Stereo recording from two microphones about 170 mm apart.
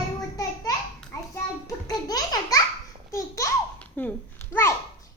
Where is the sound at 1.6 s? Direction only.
20° left (ahead or behind).